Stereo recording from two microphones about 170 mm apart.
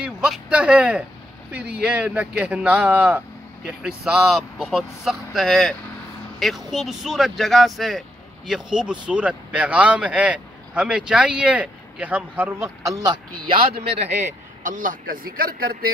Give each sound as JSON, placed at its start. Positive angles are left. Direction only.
{"t": 0.0, "sound": "a man's voice", "side_deg": -5}
{"t": 12.8, "sound": "speech", "side_deg": -20}
{"t": 13.7, "sound": "a man's voice", "side_deg": -35}
{"t": 14.6, "sound": "a man's voice", "side_deg": -50}